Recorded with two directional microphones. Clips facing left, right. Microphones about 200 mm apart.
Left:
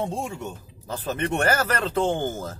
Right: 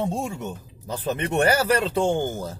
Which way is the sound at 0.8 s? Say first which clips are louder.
Right 1 dB; 15° right (ahead or behind).